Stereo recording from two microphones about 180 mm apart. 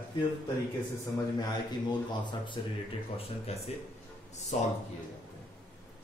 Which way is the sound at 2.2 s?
25° left (ahead or behind).